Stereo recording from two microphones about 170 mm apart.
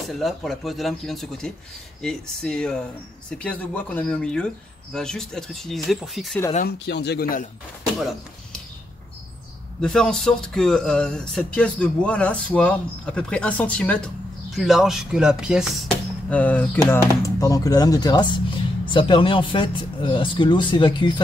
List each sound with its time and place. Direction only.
0.1 s speech: centre (ahead or behind)
6.9 s a man's voice: 75° left (ahead or behind); by 7.4 s 60° left (ahead or behind)
9.8 s speech: 5° left (ahead or behind); by 21.2 s 25° left (ahead or behind)